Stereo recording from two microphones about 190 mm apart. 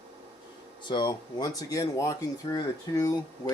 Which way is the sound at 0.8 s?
25° left (ahead or behind).